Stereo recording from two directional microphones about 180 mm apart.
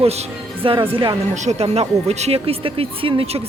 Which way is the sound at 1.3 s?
40° right (ahead or behind).